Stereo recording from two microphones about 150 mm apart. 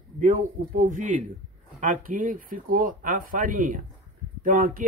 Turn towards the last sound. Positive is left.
turn(degrees=-70)  # may be behind; listen again after turning